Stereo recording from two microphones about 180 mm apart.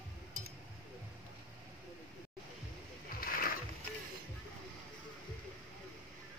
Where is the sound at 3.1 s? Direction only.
55° left (ahead or behind).